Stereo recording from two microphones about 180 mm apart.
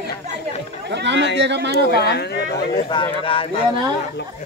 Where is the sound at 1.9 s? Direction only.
65° left (ahead or behind).